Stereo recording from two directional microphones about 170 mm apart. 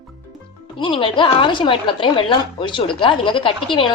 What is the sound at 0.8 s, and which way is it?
A woman's voice, 30° left (ahead or behind).